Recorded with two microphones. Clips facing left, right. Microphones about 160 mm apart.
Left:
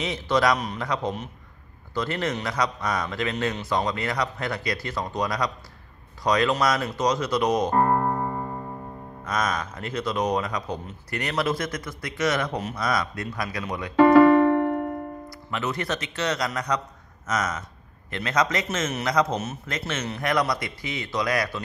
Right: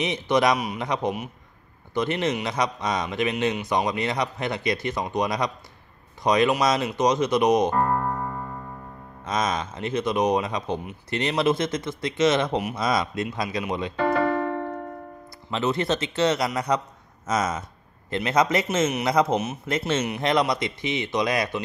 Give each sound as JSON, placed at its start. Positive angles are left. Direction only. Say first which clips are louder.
{"t": 0.0, "sound": "a man's voice", "louder": "right 1 dB", "side_deg": -20}
{"t": 7.7, "sound": "music", "louder": "left 2 dB", "side_deg": 40}
{"t": 9.2, "sound": "a man's voice", "louder": "right 1 dB", "side_deg": -20}
{"t": 13.9, "sound": "keyboard", "louder": "left 10 dB", "side_deg": 85}
{"t": 15.2, "sound": "a man's voice", "louder": "right 8 dB", "side_deg": -25}